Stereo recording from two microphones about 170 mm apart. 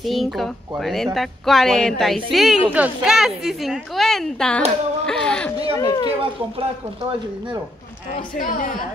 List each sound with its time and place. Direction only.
0.0 s speech: centre (ahead or behind)
5.0 s a sound: 5° left (ahead or behind)
5.8 s speech: 20° left (ahead or behind)
8.4 s a woman's voice: 50° left (ahead or behind)